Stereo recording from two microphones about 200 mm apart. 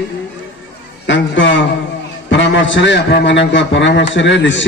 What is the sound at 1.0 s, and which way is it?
Speech, 65° left (ahead or behind).